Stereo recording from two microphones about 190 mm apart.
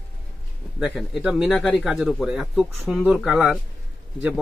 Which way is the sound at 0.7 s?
Centre (ahead or behind).